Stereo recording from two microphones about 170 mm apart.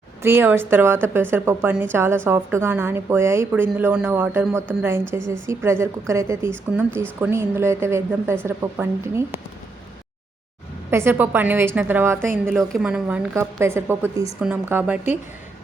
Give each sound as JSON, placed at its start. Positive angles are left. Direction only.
{"t": 0.2, "sound": "speech", "side_deg": -15}
{"t": 10.9, "sound": "speech", "side_deg": -10}
{"t": 12.5, "sound": "speech", "side_deg": 0}